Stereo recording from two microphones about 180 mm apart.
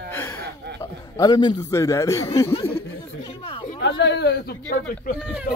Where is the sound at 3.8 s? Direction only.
75° left (ahead or behind).